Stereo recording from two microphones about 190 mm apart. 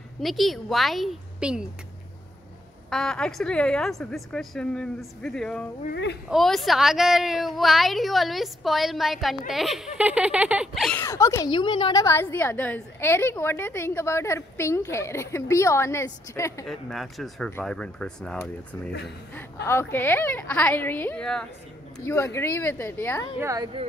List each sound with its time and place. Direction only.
0.2 s a woman's voice: centre (ahead or behind)
2.9 s a woman's voice: 5° left (ahead or behind)
5.9 s a child's voice: 65° left (ahead or behind)
6.2 s a woman's voice: centre (ahead or behind)
11.1 s a woman's voice: 15° left (ahead or behind)
16.6 s a woman's voice: centre (ahead or behind)
23.4 s a woman's voice: 20° right (ahead or behind)